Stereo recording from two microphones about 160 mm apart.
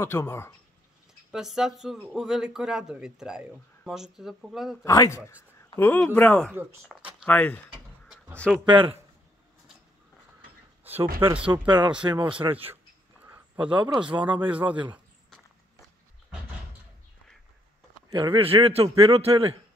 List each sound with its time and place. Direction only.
0.0 s speech: 15° left (ahead or behind)
1.3 s speech: 5° right (ahead or behind)
4.8 s speech: 20° left (ahead or behind)
6.5 s a man's voice: 15° right (ahead or behind)
7.2 s speech: 10° left (ahead or behind)
8.6 s a man's voice: 30° right (ahead or behind)
11.1 s a man's voice: 10° right (ahead or behind)
11.5 s a man's voice: 30° right (ahead or behind)
14.2 s a man's voice: 10° right (ahead or behind)
18.1 s a man's voice: 30° right (ahead or behind)